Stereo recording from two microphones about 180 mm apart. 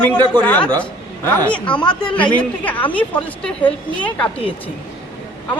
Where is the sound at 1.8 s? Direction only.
25° left (ahead or behind).